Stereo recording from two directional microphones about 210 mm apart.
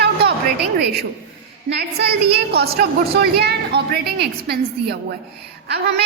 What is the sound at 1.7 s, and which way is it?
A woman's voice, 50° right (ahead or behind).